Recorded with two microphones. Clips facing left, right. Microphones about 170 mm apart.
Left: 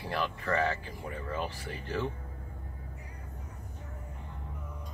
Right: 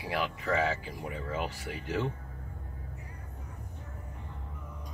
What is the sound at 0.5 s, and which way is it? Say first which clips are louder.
Speech: right 1 dB; 5° right (ahead or behind).